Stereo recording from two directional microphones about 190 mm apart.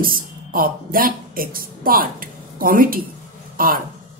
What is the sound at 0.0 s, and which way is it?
Speech, 50° right (ahead or behind).